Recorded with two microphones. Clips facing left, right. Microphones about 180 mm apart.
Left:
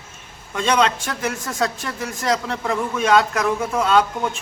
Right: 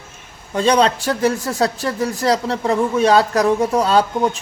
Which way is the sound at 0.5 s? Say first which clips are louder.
Right 4 dB; 35° right (ahead or behind).